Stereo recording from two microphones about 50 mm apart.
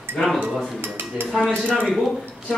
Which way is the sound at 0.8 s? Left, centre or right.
Right.